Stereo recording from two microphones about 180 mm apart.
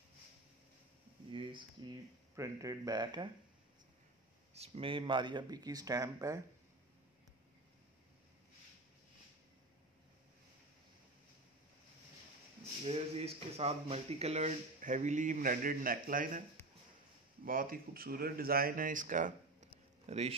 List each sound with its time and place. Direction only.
1.9 s speech: 15° right (ahead or behind)
4.6 s speech: 30° right (ahead or behind)
12.8 s speech: 35° right (ahead or behind); by 16.4 s 50° right (ahead or behind)
17.5 s speech: 55° right (ahead or behind)
19.7 s a sound: 35° right (ahead or behind)